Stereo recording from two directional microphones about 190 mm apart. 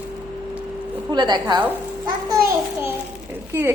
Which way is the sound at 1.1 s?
25° right (ahead or behind).